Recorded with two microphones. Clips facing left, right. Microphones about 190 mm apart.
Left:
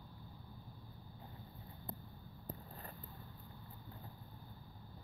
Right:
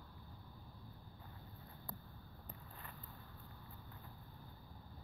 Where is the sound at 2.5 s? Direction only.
35° left (ahead or behind).